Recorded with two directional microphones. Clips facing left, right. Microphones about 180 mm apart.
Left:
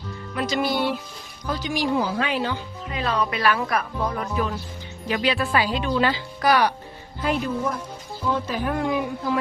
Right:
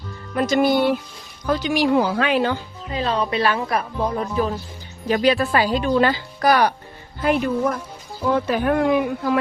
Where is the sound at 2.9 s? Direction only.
30° right (ahead or behind); by 6.8 s 45° right (ahead or behind).